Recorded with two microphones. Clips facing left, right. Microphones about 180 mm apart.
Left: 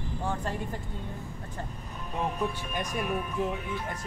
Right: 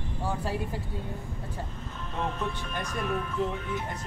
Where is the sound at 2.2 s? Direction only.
10° left (ahead or behind).